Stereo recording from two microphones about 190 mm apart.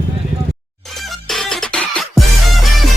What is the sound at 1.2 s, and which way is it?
Music, centre (ahead or behind).